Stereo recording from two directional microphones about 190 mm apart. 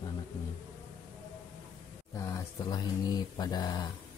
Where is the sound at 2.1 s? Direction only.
20° left (ahead or behind).